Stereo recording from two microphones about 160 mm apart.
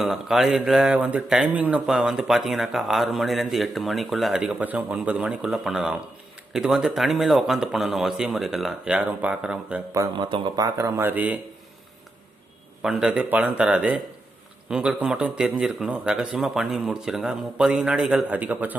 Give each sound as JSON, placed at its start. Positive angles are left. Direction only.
{"t": 0.0, "sound": "speech", "side_deg": 0}
{"t": 9.9, "sound": "speech", "side_deg": -20}
{"t": 12.8, "sound": "speech", "side_deg": -5}